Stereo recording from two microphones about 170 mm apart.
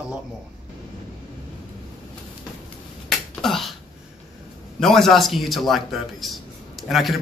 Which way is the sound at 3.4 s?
Centre (ahead or behind).